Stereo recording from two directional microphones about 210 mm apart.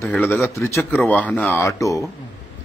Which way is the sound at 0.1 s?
10° left (ahead or behind).